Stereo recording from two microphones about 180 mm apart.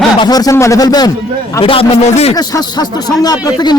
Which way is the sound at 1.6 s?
30° left (ahead or behind).